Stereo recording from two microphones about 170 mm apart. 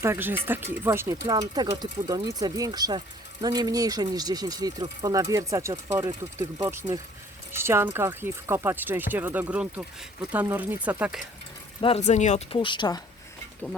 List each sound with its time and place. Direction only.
0.0 s speech: 15° right (ahead or behind)
11.8 s speech: 35° left (ahead or behind)
12.5 s speech: 30° left (ahead or behind)